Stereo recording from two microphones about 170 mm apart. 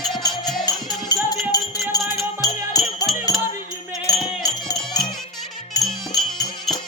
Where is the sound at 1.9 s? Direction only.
20° left (ahead or behind).